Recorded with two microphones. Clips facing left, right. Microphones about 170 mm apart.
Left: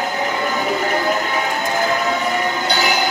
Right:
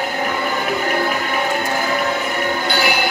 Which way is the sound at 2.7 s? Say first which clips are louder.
Right 1 dB; 45° left (ahead or behind).